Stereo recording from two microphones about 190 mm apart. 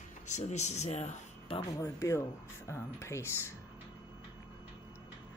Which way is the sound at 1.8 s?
15° left (ahead or behind).